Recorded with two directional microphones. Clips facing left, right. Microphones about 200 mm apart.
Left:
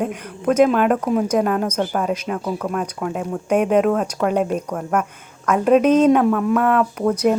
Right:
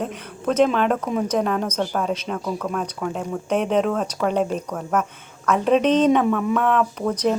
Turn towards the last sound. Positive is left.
turn(degrees=10)  # may be behind; listen again after turning